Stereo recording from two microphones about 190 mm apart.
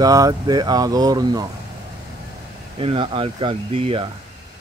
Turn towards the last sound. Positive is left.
turn(degrees=-30)  # may be behind; listen again after turning